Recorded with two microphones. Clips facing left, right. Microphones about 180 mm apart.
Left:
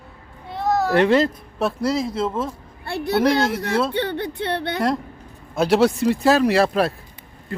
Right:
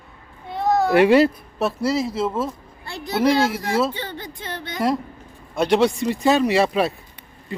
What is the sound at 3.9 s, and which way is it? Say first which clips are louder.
Speech: left 8 dB; 65° left (ahead or behind).